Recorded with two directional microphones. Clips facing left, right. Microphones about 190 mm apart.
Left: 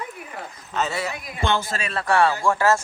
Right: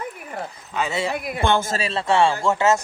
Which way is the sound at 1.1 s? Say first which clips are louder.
Right 4 dB; 55° right (ahead or behind).